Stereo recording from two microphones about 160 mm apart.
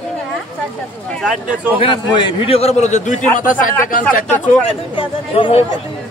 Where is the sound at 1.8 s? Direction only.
30° left (ahead or behind); by 4.6 s 60° left (ahead or behind).